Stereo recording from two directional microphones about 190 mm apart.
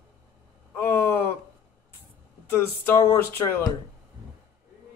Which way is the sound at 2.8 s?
15° left (ahead or behind).